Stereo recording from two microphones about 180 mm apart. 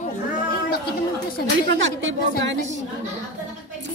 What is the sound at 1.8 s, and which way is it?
Speech, 90° right.